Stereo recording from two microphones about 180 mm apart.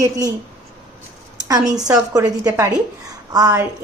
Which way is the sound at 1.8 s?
20° right (ahead or behind).